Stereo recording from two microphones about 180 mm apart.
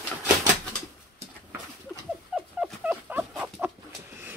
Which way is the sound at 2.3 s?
5° right (ahead or behind).